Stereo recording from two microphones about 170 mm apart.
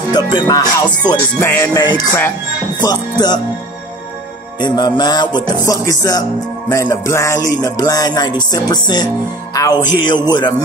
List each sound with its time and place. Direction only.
0.1 s music: 25° left (ahead or behind)
4.6 s music: 25° left (ahead or behind)